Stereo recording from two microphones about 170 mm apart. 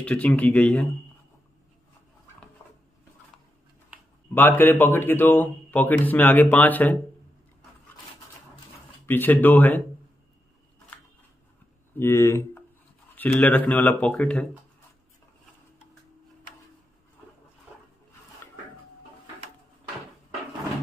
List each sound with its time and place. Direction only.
0.0 s speech: 10° left (ahead or behind)
4.3 s speech: 10° left (ahead or behind)
9.0 s speech: 10° left (ahead or behind)
12.0 s speech: 15° left (ahead or behind)